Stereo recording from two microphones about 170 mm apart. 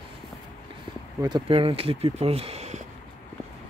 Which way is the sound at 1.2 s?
30° right (ahead or behind).